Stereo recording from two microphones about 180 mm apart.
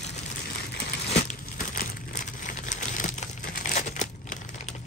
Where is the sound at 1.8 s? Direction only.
45° left (ahead or behind).